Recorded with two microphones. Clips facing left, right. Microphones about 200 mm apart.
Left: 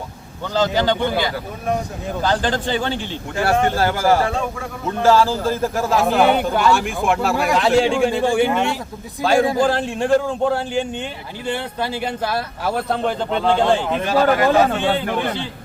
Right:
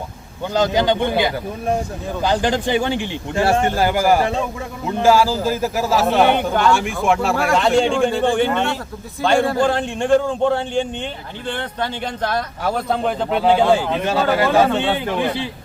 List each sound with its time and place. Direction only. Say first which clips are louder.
0.4 s a man's voice: right 1 dB; 15° right (ahead or behind)
3.3 s a man's voice: right 1 dB; 25° right (ahead or behind); by 14.0 s 5° right (ahead or behind)
14.0 s speech: left 2 dB; 25° right (ahead or behind)